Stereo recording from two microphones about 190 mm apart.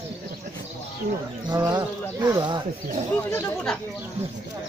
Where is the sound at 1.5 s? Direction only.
20° right (ahead or behind).